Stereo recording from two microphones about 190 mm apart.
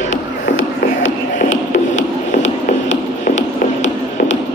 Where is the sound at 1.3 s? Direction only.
40° left (ahead or behind).